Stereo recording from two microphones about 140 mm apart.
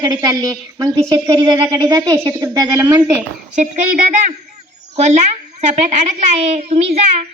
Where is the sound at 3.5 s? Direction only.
65° right (ahead or behind).